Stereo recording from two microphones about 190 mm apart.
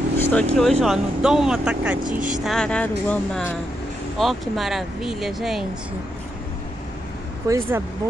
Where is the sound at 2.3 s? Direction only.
Centre (ahead or behind).